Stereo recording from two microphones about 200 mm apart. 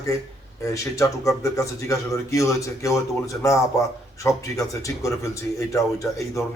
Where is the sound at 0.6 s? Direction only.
15° left (ahead or behind).